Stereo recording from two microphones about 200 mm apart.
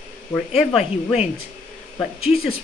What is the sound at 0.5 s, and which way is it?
Speech, 5° right (ahead or behind).